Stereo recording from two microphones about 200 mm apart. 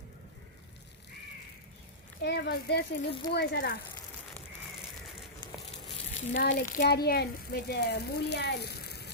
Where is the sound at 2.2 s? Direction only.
55° left (ahead or behind).